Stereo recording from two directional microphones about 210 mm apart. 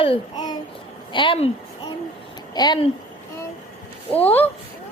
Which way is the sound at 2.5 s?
20° left (ahead or behind).